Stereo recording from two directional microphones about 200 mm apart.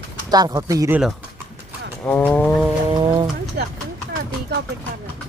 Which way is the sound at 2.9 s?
20° right (ahead or behind).